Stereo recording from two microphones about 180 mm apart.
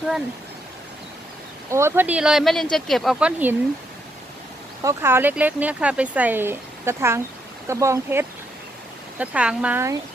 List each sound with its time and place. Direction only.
1.7 s speech: 15° right (ahead or behind)
4.8 s speech: 15° right (ahead or behind)